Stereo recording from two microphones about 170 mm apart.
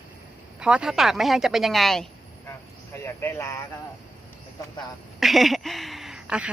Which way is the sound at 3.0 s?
15° left (ahead or behind).